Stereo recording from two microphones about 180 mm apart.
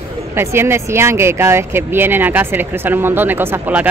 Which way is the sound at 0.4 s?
15° right (ahead or behind).